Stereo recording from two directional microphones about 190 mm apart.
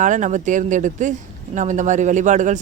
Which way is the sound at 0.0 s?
40° right (ahead or behind).